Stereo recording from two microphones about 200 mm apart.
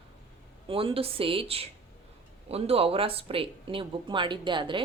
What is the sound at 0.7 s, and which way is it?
Speech, 25° right (ahead or behind).